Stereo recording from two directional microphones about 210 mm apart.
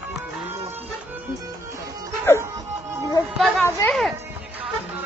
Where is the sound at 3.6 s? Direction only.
10° left (ahead or behind).